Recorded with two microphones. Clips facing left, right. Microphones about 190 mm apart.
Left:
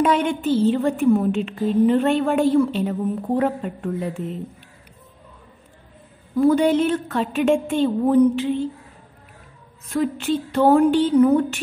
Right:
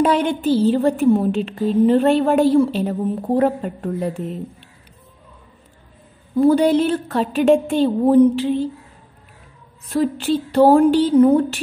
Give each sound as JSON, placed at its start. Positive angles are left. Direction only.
{"t": 0.0, "sound": "a woman's voice", "side_deg": -35}
{"t": 6.3, "sound": "a woman's voice", "side_deg": -30}
{"t": 9.9, "sound": "a woman's voice", "side_deg": -35}